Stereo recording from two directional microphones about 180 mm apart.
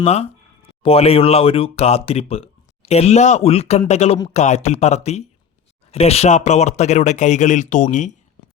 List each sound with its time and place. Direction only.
0.0 s speech: 35° left (ahead or behind)